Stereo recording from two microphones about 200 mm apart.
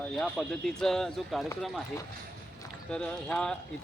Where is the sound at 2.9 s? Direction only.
5° left (ahead or behind).